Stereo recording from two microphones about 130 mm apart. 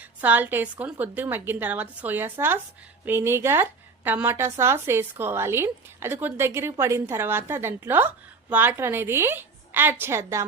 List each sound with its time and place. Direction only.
0.2 s a woman's voice: 15° right (ahead or behind)